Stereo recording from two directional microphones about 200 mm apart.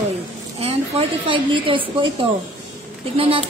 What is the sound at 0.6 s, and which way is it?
A woman's voice, 30° right (ahead or behind).